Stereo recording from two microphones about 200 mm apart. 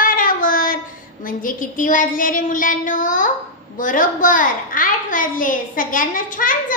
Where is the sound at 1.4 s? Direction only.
40° left (ahead or behind).